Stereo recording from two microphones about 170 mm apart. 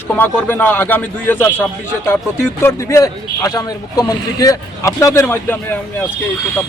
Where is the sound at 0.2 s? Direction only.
10° left (ahead or behind).